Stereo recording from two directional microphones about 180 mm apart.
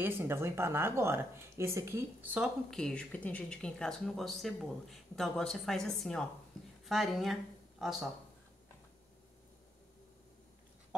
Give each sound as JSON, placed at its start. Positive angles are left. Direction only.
{"t": 0.0, "sound": "a woman's voice", "side_deg": -10}